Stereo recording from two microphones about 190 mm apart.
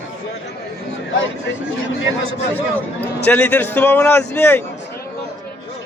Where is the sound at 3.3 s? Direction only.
10° left (ahead or behind).